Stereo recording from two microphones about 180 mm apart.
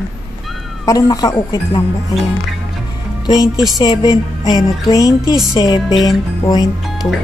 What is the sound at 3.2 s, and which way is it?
Speech, 20° left (ahead or behind).